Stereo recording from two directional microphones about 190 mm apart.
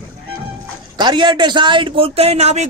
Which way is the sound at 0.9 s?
25° right (ahead or behind).